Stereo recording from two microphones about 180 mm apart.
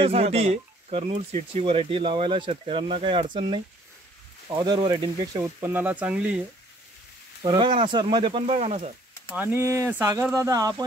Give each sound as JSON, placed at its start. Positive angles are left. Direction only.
{"t": 0.0, "sound": "speech", "side_deg": -35}
{"t": 5.7, "sound": "speech", "side_deg": -10}
{"t": 7.4, "sound": "speech", "side_deg": -25}
{"t": 9.3, "sound": "speech", "side_deg": -10}